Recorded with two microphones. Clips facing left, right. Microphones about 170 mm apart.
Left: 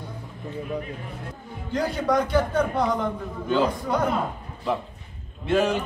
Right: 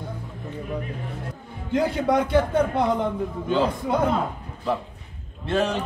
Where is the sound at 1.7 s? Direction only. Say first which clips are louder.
Right 2 dB; 25° right (ahead or behind).